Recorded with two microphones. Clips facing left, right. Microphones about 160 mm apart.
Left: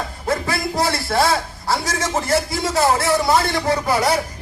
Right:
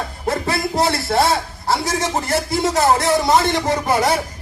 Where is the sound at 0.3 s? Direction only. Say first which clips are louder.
Right 1 dB; 25° right (ahead or behind).